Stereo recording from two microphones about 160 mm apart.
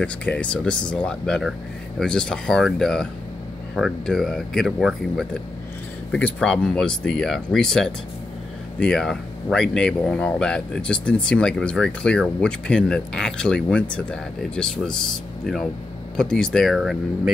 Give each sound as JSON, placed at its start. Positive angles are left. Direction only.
{"t": 0.0, "sound": "speech", "side_deg": 5}